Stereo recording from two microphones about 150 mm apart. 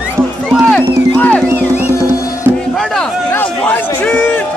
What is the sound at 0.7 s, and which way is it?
Music, 10° left (ahead or behind).